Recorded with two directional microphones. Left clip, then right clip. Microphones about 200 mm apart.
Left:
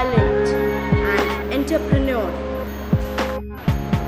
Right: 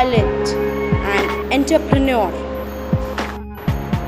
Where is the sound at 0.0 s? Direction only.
35° right (ahead or behind).